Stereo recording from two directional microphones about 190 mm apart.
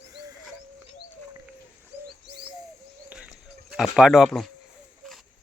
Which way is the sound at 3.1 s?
5° right (ahead or behind).